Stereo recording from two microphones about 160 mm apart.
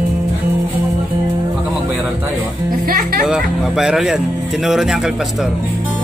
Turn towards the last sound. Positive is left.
turn(degrees=-5)  # may be behind; listen again after turning